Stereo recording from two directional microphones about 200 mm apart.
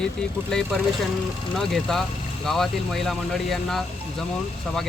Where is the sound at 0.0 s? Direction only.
5° left (ahead or behind).